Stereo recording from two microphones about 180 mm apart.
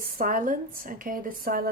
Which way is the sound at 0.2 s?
50° right (ahead or behind).